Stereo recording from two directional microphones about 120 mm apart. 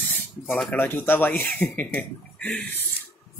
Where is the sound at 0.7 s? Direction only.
15° left (ahead or behind).